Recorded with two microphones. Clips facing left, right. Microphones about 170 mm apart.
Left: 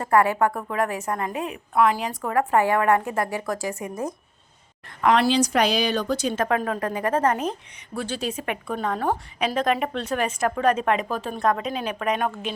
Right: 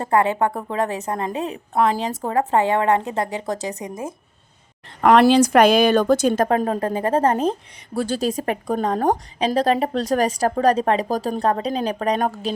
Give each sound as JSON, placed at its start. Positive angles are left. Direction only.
{"t": 0.0, "sound": "a woman's voice", "side_deg": -25}
{"t": 4.9, "sound": "a woman's voice", "side_deg": -50}